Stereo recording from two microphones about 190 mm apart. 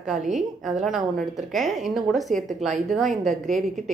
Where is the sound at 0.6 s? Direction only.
Centre (ahead or behind).